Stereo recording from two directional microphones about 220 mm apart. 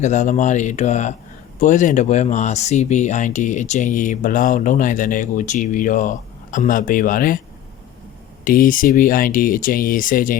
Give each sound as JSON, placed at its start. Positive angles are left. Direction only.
{"t": 0.0, "sound": "speech", "side_deg": 35}
{"t": 8.4, "sound": "speech", "side_deg": 40}